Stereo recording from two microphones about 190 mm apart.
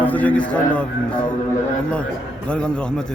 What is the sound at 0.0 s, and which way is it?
A man's voice, 10° left (ahead or behind).